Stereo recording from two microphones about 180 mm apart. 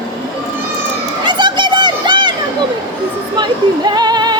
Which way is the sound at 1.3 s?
25° right (ahead or behind).